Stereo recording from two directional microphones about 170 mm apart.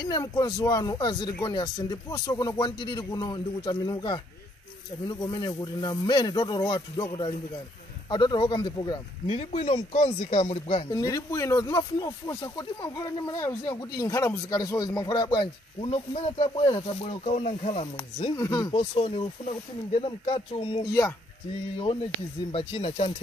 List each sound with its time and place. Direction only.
0.0 s speech: 25° left (ahead or behind)
9.3 s speech: 40° left (ahead or behind)
10.9 s speech: 20° left (ahead or behind); by 18.3 s 40° left (ahead or behind)
18.3 s speech: 20° left (ahead or behind)
18.8 s speech: 40° left (ahead or behind)
22.5 s speech: 35° left (ahead or behind)